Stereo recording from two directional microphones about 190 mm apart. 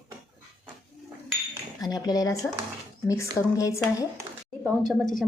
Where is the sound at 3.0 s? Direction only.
15° left (ahead or behind).